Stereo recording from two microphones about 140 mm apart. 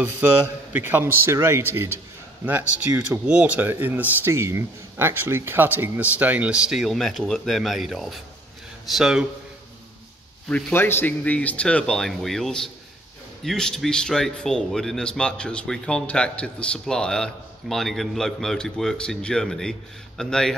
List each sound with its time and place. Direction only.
0.0 s speech: 15° right (ahead or behind)
10.5 s speech: 15° left (ahead or behind)